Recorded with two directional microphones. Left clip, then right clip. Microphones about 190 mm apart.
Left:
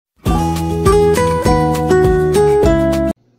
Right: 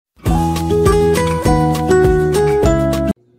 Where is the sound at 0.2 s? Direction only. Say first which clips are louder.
Even; centre (ahead or behind).